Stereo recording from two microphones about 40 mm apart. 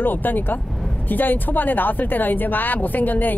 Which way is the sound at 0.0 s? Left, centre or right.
Left.